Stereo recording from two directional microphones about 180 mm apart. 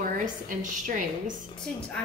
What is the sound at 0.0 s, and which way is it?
A woman's voice, 45° right (ahead or behind).